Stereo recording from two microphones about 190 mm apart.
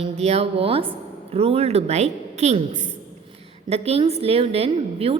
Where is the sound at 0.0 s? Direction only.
35° right (ahead or behind).